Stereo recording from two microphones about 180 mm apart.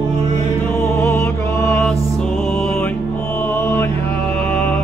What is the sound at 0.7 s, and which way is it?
Music, 10° left (ahead or behind).